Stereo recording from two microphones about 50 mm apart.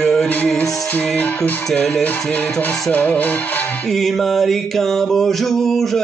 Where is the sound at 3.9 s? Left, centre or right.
Centre.